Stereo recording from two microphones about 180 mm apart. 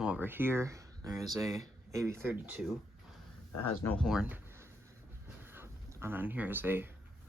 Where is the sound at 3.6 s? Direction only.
10° left (ahead or behind).